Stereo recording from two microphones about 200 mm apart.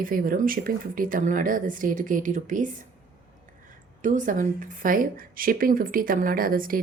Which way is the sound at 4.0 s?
40° right (ahead or behind).